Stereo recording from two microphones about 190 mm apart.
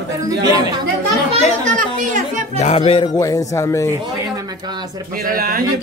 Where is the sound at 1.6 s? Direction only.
40° right (ahead or behind).